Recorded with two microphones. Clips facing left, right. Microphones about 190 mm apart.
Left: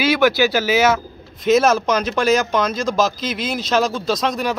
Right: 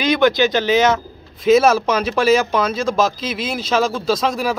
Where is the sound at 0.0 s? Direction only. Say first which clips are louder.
Right 1 dB; 5° left (ahead or behind).